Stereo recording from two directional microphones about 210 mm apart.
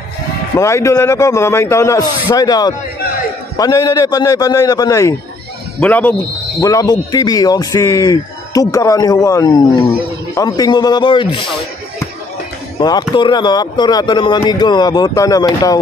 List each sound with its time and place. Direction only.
0.6 s speech: 15° left (ahead or behind)
12.7 s speech: 20° left (ahead or behind)